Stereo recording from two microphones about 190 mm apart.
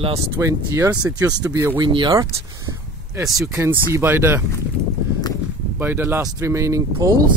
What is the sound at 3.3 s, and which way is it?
Speech, centre (ahead or behind).